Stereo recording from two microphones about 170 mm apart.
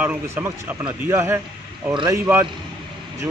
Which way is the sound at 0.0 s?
10° right (ahead or behind).